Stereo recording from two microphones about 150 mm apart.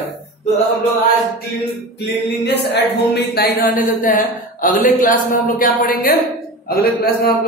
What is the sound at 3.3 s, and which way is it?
A man's voice, 65° left (ahead or behind).